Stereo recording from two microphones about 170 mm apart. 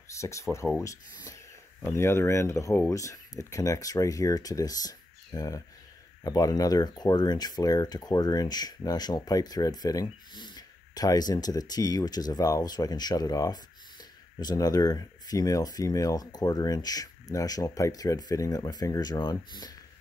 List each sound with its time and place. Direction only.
0.1 s speech: 15° left (ahead or behind)
1.8 s speech: 15° left (ahead or behind)